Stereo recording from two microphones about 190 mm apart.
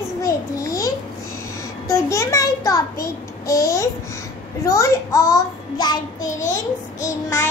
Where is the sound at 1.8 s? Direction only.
15° left (ahead or behind).